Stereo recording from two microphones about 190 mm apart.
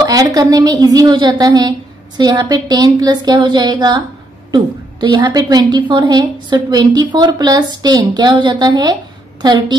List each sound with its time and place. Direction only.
0.0 s a woman's voice: 20° right (ahead or behind)
5.0 s a woman's voice: 20° right (ahead or behind)